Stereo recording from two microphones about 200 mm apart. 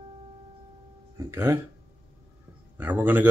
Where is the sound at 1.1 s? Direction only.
15° right (ahead or behind).